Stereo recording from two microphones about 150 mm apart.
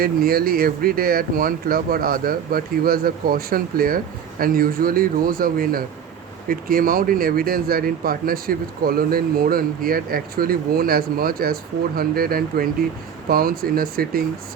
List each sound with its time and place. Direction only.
0.0 s speech: 80° right